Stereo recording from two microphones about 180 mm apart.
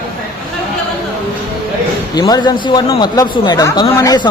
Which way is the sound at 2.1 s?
20° left (ahead or behind).